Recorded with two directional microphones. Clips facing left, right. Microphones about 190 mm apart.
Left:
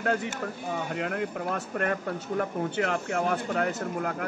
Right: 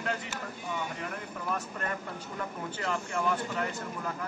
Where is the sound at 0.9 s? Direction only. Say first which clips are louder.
Left 8 dB; 80° left.